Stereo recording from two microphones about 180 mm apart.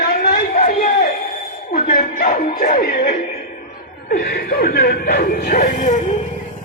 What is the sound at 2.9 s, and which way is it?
Speech, 60° left (ahead or behind).